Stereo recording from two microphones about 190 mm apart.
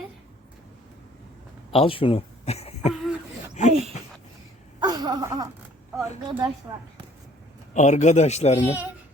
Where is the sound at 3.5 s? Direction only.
40° left (ahead or behind).